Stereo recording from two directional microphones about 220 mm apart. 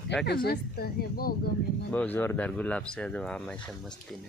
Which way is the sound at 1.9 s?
10° left (ahead or behind).